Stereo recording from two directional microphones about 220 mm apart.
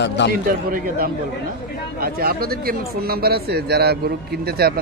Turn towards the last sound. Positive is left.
turn(degrees=-45)  # may be behind; listen again after turning